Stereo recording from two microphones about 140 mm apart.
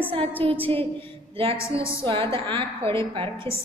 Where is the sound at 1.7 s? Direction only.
40° right (ahead or behind).